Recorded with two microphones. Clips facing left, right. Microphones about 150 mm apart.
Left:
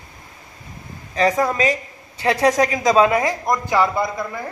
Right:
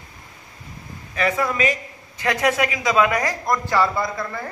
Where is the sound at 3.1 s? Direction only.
25° left (ahead or behind).